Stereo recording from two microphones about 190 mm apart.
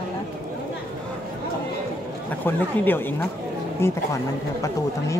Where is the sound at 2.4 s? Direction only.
10° left (ahead or behind).